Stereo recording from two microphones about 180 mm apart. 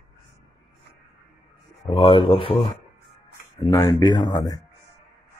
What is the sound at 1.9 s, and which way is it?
Speech, 30° left (ahead or behind).